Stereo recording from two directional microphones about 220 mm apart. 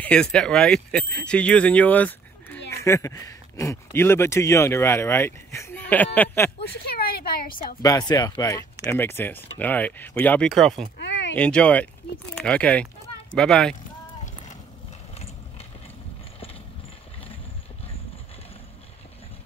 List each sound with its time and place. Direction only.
0.0 s speech: 5° left (ahead or behind)
6.8 s a woman's voice: 45° left (ahead or behind)
7.8 s speech: 15° left (ahead or behind)
11.0 s a sound: 55° left (ahead or behind)
11.3 s speech: 5° left (ahead or behind)